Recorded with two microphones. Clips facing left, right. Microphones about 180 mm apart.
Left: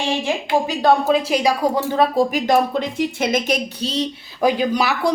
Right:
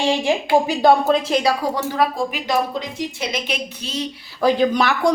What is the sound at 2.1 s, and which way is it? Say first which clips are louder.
Speech: left 6 dB; 40° left (ahead or behind).